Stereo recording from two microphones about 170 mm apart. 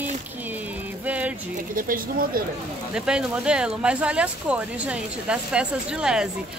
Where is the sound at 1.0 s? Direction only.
10° right (ahead or behind).